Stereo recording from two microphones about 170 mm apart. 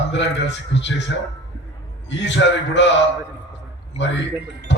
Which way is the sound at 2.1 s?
90° left.